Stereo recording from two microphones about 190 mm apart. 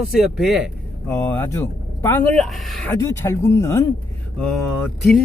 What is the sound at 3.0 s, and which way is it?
Speech, 15° left (ahead or behind).